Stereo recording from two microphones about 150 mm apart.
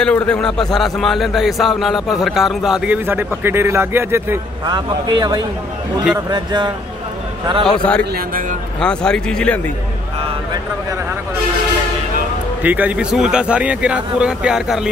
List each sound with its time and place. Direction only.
0.0 s a man's voice: 5° left (ahead or behind); by 4.4 s 15° right (ahead or behind)
4.6 s speech: 30° right (ahead or behind)
7.6 s a man's voice: 5° left (ahead or behind)
8.0 s a man's voice: 80° right
8.7 s a man's voice: 5° left (ahead or behind)
12.6 s speech: 10° right (ahead or behind)